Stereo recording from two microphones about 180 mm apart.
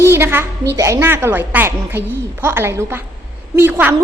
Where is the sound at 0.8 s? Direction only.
15° right (ahead or behind).